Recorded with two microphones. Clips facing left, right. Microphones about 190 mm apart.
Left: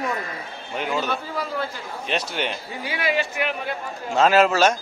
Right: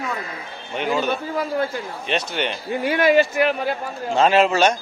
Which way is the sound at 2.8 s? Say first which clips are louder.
Right 9 dB; 50° right (ahead or behind).